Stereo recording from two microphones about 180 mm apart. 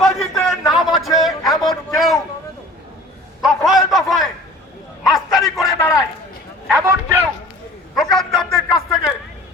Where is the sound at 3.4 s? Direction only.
Centre (ahead or behind).